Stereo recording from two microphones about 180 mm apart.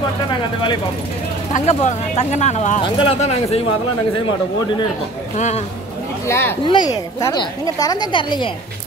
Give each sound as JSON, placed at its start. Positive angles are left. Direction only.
{"t": 1.5, "sound": "speech", "side_deg": 40}
{"t": 6.2, "sound": "speech", "side_deg": 15}
{"t": 6.6, "sound": "a woman's voice", "side_deg": 25}